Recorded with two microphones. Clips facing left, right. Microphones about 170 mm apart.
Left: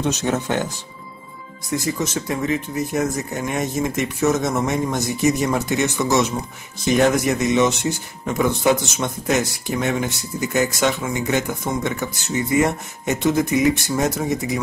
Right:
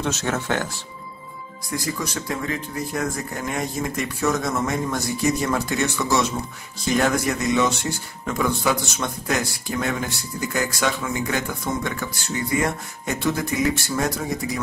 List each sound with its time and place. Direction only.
0.0 s speech: 15° left (ahead or behind)
1.7 s speech: 20° left (ahead or behind)